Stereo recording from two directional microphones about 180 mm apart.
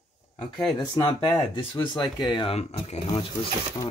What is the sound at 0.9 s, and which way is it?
Speech, 20° left (ahead or behind).